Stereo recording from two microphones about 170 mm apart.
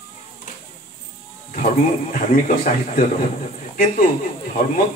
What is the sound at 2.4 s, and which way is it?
Speech, 50° left (ahead or behind).